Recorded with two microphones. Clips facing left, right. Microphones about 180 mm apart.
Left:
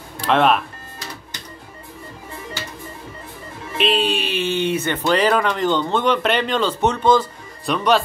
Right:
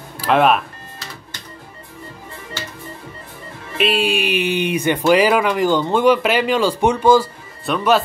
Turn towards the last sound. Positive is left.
turn(degrees=0)  # may be behind; listen again after turning